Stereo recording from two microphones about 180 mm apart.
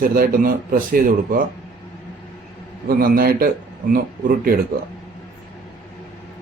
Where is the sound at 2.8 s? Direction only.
55° right (ahead or behind).